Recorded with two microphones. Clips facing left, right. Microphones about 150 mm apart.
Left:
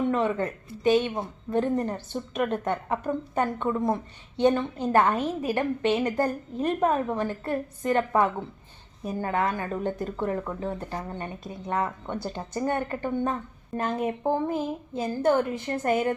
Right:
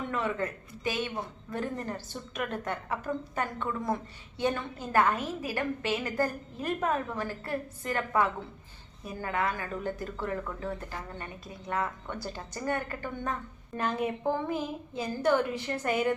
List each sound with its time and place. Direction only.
0.1 s a woman's voice: 30° left (ahead or behind)
13.7 s a woman's voice: 45° left (ahead or behind)